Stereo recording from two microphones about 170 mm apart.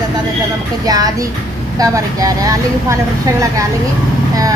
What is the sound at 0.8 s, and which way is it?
Speech, 20° right (ahead or behind).